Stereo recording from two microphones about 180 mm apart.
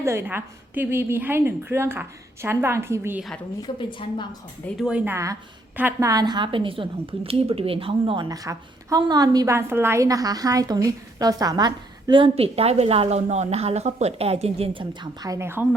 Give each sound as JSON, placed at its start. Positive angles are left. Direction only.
{"t": 0.0, "sound": "a woman's voice", "side_deg": -15}
{"t": 3.6, "sound": "a woman's voice", "side_deg": 25}
{"t": 4.8, "sound": "a woman's voice", "side_deg": -5}